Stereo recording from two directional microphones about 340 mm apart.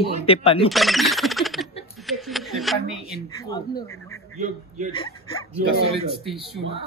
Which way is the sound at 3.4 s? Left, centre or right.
Centre.